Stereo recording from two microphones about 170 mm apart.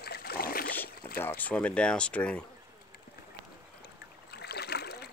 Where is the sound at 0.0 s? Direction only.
65° left (ahead or behind).